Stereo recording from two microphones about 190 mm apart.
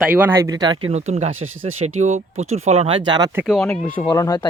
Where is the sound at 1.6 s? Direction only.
35° right (ahead or behind); by 3.4 s 15° right (ahead or behind).